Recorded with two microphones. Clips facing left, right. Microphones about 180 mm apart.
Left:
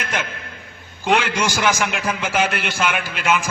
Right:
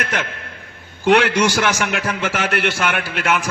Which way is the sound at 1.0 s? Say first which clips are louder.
Right 5 dB; 75° right (ahead or behind).